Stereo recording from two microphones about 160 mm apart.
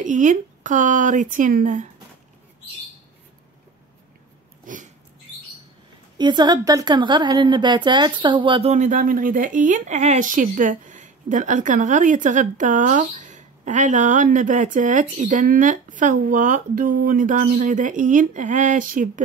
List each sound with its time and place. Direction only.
0.0 s speech: 50° right (ahead or behind)
4.7 s a sound: 55° right (ahead or behind)
6.1 s a woman's voice: 30° right (ahead or behind)
8.7 s speech: 55° right (ahead or behind)